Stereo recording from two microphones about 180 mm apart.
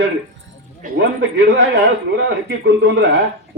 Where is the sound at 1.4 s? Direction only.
75° right (ahead or behind).